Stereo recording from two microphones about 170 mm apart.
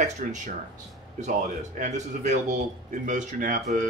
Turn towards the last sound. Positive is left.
turn(degrees=-50)  # may be behind; listen again after turning